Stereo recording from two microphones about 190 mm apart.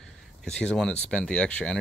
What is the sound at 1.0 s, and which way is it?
Speech, 5° left (ahead or behind).